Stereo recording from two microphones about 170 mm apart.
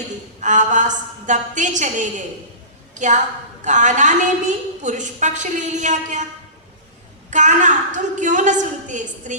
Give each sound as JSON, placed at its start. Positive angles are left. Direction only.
{"t": 0.3, "sound": "a woman's voice", "side_deg": -45}
{"t": 7.3, "sound": "a woman's voice", "side_deg": -45}